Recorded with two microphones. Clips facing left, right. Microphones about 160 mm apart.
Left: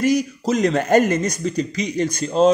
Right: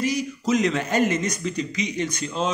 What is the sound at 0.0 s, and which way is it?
Speech, 40° left (ahead or behind).